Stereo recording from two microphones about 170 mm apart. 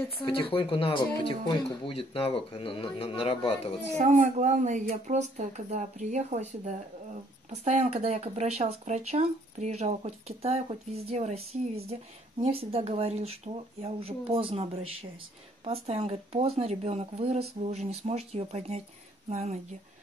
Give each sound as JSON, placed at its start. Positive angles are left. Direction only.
{"t": 0.2, "sound": "speech", "side_deg": 30}
{"t": 4.0, "sound": "speech", "side_deg": -45}